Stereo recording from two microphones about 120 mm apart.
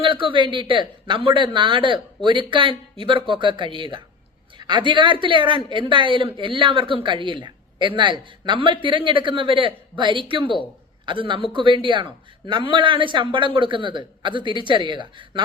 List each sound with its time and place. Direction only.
0.0 s speech: 45° right (ahead or behind)